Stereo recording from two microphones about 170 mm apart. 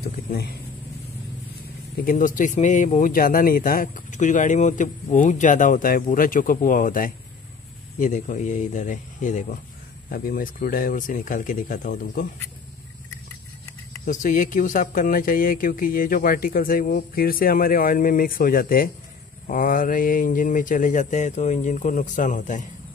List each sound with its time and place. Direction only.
0.0 s a sound: 65° left (ahead or behind)
2.0 s speech: 55° left (ahead or behind)
14.0 s speech: 50° left (ahead or behind)